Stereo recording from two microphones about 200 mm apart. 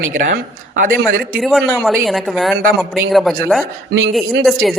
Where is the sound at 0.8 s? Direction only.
45° right (ahead or behind).